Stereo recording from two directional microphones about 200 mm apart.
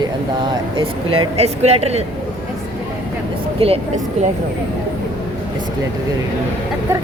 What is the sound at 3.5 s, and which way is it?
Speech, 30° right (ahead or behind).